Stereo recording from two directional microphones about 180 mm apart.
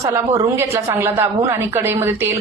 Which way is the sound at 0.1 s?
15° right (ahead or behind).